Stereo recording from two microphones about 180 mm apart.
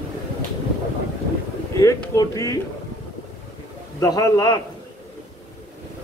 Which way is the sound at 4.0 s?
20° left (ahead or behind).